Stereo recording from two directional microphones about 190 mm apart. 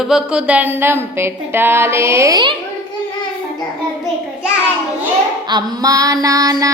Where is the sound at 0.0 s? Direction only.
5° right (ahead or behind); by 2.6 s 20° right (ahead or behind).